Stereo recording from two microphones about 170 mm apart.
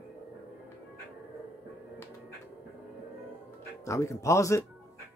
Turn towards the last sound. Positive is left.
turn(degrees=15)  # may be behind; listen again after turning